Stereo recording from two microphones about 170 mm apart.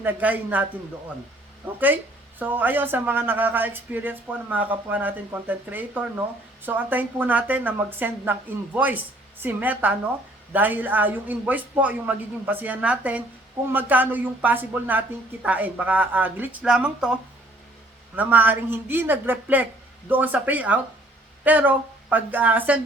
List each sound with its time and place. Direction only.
0.0 s speech: 10° right (ahead or behind)
2.4 s speech: 10° right (ahead or behind)
18.2 s speech: 10° right (ahead or behind)